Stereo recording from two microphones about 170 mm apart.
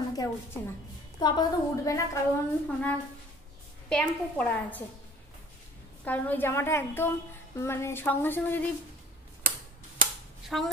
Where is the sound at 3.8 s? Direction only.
5° left (ahead or behind).